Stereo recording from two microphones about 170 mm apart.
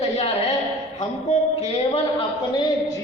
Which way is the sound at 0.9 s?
40° left (ahead or behind).